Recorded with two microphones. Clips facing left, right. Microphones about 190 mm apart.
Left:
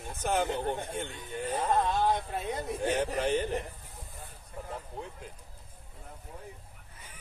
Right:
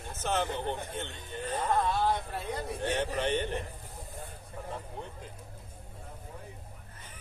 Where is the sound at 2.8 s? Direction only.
10° left (ahead or behind).